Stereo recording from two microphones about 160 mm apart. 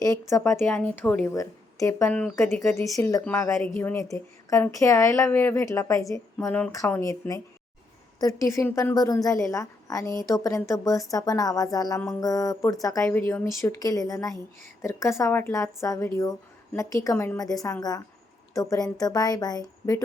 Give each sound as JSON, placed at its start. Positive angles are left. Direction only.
{"t": 0.0, "sound": "a woman's voice", "side_deg": 20}
{"t": 1.3, "sound": "a woman's voice", "side_deg": 20}